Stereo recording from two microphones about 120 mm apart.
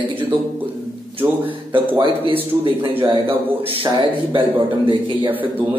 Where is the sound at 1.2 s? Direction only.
50° right (ahead or behind).